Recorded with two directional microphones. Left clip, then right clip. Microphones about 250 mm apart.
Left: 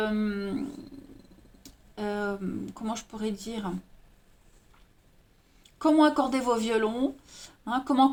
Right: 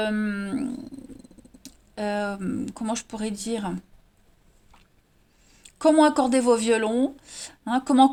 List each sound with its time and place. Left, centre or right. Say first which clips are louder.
0.0 s wild animals: right 3 dB; right
2.0 s a woman's voice: right 4 dB; right
5.6 s a woman's voice: right 4 dB; right